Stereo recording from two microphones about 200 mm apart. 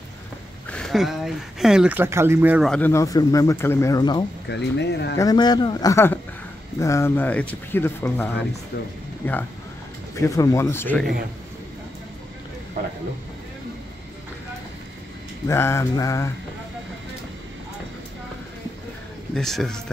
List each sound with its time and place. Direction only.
0.7 s speech: 5° left (ahead or behind)
2.7 s speech: 10° left (ahead or behind)
4.5 s speech: 60° left (ahead or behind)
5.1 s speech: 20° left (ahead or behind)
15.4 s speech: 15° left (ahead or behind)
19.3 s speech: centre (ahead or behind)